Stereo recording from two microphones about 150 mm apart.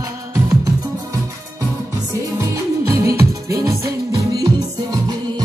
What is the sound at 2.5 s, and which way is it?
Music, 20° right (ahead or behind).